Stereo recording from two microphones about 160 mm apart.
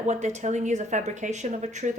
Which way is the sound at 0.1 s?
45° right (ahead or behind).